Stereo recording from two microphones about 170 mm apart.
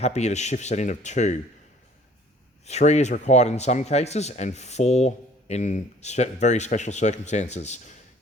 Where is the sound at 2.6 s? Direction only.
40° left (ahead or behind).